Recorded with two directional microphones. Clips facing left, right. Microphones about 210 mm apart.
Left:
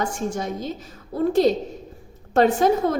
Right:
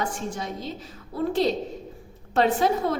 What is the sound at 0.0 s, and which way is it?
A woman's voice, 45° left (ahead or behind).